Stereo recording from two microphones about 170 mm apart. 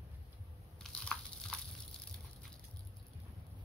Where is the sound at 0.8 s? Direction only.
5° left (ahead or behind).